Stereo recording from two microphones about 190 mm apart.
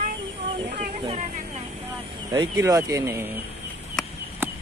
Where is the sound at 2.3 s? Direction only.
20° right (ahead or behind).